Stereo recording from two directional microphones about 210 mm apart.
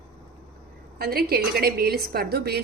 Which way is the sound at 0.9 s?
45° right (ahead or behind).